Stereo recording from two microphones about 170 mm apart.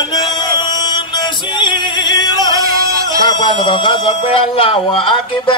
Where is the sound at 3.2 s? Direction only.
25° left (ahead or behind).